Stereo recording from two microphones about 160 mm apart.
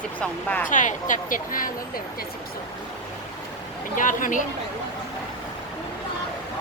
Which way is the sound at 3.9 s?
55° left (ahead or behind).